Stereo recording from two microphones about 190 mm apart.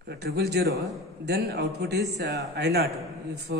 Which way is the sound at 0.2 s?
60° right (ahead or behind).